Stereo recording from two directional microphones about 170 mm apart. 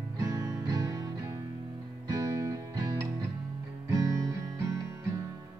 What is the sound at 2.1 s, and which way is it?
Music, 20° right (ahead or behind).